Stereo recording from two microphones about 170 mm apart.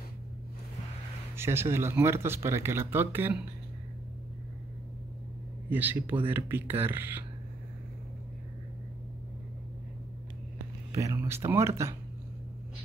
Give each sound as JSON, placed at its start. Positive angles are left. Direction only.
{"t": 1.3, "sound": "speech", "side_deg": -15}
{"t": 5.7, "sound": "speech", "side_deg": -10}
{"t": 10.9, "sound": "speech", "side_deg": -20}